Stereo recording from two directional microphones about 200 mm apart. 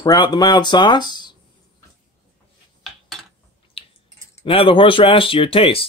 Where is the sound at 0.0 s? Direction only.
20° left (ahead or behind).